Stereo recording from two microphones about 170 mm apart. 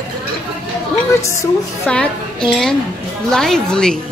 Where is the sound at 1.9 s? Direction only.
5° left (ahead or behind).